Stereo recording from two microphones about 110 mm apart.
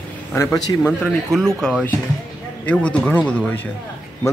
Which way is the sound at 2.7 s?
10° left (ahead or behind).